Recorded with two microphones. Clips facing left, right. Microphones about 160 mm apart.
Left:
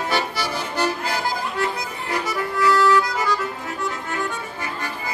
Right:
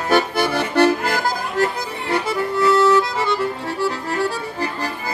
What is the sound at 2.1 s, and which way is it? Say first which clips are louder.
Accordion: right 4 dB; 25° right (ahead or behind).